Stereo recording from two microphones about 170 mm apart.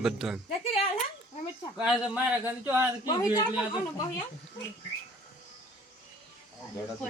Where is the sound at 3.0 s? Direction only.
25° left (ahead or behind).